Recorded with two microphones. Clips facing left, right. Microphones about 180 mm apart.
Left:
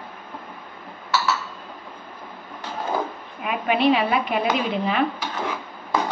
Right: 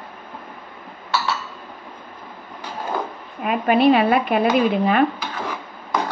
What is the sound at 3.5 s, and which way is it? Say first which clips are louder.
A woman's voice: right 4 dB; 45° right (ahead or behind).